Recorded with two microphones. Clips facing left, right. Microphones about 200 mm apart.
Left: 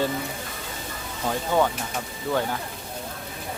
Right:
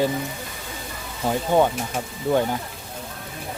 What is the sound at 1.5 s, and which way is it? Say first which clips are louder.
Speech: right 4 dB; 15° right (ahead or behind).